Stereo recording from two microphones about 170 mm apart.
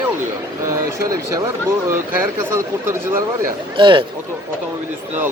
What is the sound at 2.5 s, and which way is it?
Speech, 15° right (ahead or behind).